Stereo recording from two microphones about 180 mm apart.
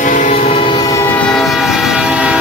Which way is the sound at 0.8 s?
15° left (ahead or behind).